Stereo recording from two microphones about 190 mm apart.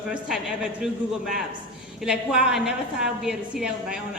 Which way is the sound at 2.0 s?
5° right (ahead or behind).